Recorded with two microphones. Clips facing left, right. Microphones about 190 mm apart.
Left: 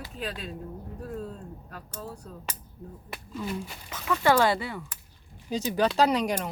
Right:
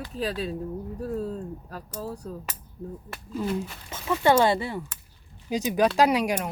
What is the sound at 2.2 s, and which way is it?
Speech, 35° right (ahead or behind).